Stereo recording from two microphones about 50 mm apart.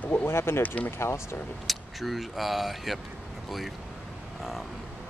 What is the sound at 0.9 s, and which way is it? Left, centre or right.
Speech, left.